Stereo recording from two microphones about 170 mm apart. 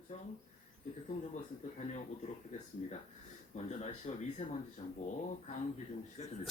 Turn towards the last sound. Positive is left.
turn(degrees=40)  # may be behind; listen again after turning